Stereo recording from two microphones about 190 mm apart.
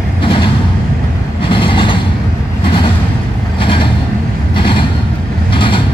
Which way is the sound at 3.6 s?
25° left (ahead or behind).